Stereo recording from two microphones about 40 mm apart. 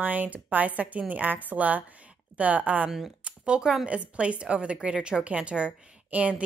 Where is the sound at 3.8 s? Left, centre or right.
Right.